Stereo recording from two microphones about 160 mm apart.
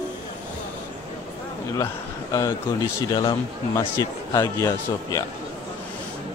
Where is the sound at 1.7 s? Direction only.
20° left (ahead or behind).